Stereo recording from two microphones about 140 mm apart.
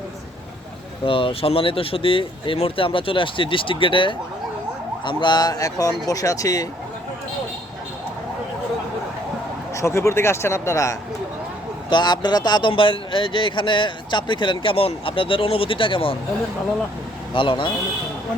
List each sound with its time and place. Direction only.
1.0 s speech: 40° left (ahead or behind)
9.7 s speech: 20° left (ahead or behind)
11.9 s speech: 30° left (ahead or behind)
17.3 s speech: 35° left (ahead or behind)